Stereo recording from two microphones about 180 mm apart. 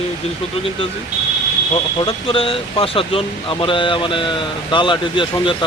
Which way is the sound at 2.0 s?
30° left (ahead or behind).